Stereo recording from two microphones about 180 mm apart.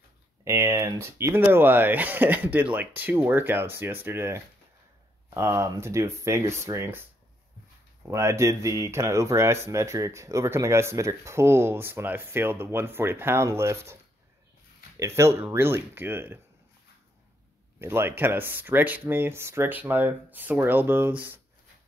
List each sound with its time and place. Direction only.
0.5 s speech: 15° right (ahead or behind)
8.0 s speech: 15° right (ahead or behind)
15.0 s speech: 15° right (ahead or behind)
17.7 s speech: 15° right (ahead or behind)